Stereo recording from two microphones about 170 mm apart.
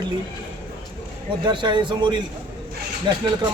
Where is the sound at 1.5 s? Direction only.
25° right (ahead or behind).